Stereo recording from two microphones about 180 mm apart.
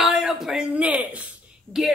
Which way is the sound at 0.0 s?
Centre (ahead or behind).